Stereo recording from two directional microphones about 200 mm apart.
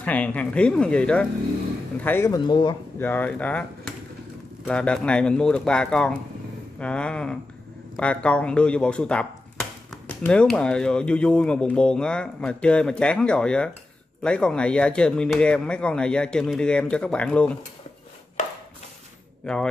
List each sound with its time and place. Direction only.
0.0 s speech: 5° left (ahead or behind)
3.0 s speech: 10° left (ahead or behind)
19.4 s speech: 5° left (ahead or behind)